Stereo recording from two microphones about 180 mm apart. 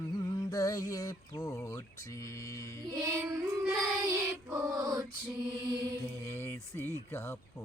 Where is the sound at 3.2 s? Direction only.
10° right (ahead or behind).